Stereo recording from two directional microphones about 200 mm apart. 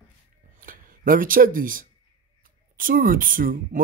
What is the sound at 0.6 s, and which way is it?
Speech, 45° right (ahead or behind).